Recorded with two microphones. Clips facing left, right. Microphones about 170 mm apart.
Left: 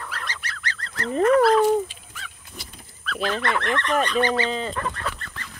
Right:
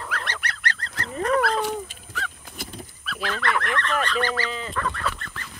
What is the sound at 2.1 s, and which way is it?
Goose, 50° right (ahead or behind).